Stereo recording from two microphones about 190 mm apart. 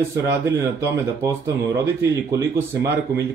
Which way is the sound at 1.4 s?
15° right (ahead or behind).